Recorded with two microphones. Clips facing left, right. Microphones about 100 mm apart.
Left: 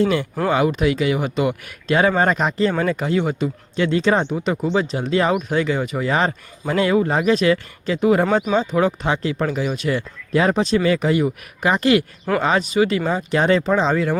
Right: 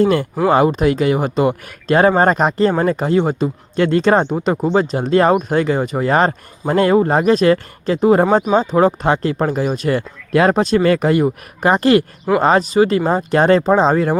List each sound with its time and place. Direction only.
0.0 s speech: 45° right (ahead or behind)
3.8 s speech: 50° right (ahead or behind)
10.3 s speech: 50° right (ahead or behind)